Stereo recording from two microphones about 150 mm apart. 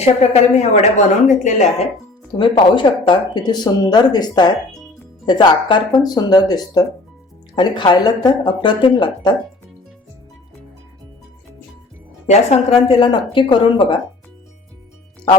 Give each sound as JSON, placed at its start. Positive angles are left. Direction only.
{"t": 0.0, "sound": "speech", "side_deg": 45}
{"t": 2.4, "sound": "speech", "side_deg": 35}
{"t": 12.3, "sound": "speech", "side_deg": 45}